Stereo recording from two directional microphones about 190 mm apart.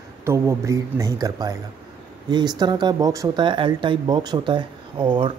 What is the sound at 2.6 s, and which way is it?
Speech, 20° right (ahead or behind).